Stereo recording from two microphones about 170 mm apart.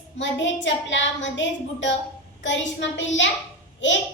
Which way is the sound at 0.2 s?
90° left.